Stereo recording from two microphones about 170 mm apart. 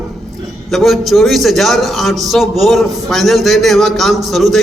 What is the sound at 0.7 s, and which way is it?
A man's voice, centre (ahead or behind).